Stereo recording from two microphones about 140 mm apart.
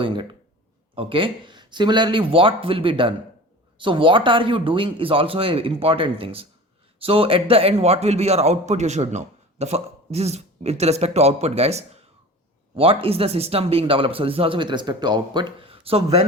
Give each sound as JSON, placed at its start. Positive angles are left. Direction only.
{"t": 0.0, "sound": "a man's voice", "side_deg": -35}